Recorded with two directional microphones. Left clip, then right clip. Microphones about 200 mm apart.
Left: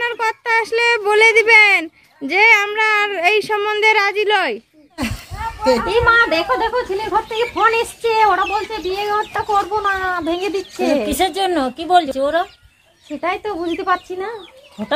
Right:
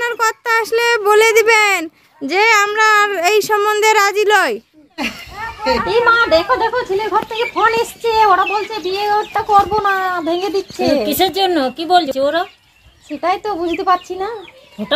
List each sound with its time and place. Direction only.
0.0 s child singing: 10° right (ahead or behind)
4.9 s children playing: 50° left (ahead or behind)
5.9 s speech: 5° left (ahead or behind)
11.1 s a woman's voice: 15° right (ahead or behind)
13.2 s speech: 10° left (ahead or behind)